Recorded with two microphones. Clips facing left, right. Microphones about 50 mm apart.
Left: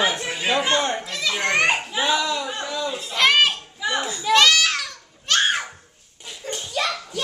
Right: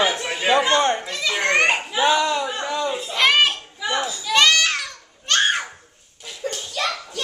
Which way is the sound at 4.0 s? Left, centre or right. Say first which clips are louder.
Right 1 dB; left.